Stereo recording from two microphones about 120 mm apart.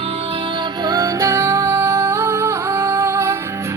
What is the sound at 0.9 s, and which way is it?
Music, 25° right (ahead or behind).